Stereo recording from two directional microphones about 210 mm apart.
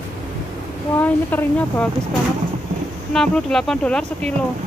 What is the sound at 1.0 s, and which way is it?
Speech, 10° left (ahead or behind).